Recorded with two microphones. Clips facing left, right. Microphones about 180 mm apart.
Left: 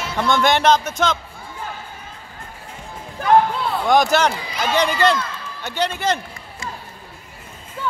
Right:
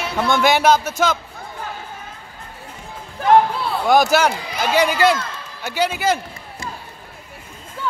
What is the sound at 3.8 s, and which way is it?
Speech, 5° right (ahead or behind).